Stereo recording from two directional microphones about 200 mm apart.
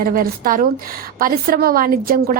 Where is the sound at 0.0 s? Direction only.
45° right (ahead or behind).